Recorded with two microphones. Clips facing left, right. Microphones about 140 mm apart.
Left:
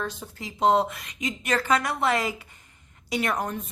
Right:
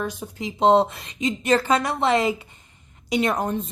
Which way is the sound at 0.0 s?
15° right (ahead or behind).